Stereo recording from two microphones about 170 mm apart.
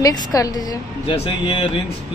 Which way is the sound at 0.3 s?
20° left (ahead or behind).